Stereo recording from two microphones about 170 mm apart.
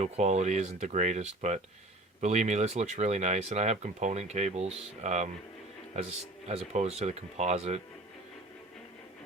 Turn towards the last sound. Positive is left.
turn(degrees=-40)  # may be behind; listen again after turning